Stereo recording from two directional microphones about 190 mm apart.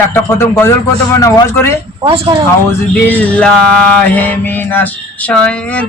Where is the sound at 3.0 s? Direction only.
10° left (ahead or behind).